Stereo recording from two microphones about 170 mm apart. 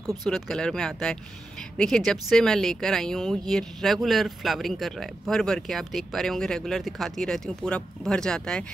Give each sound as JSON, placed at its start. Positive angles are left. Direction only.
{"t": 0.0, "sound": "speech", "side_deg": 0}